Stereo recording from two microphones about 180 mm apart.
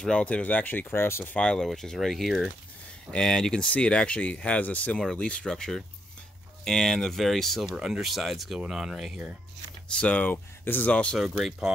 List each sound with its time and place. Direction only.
0.0 s speech: 5° left (ahead or behind)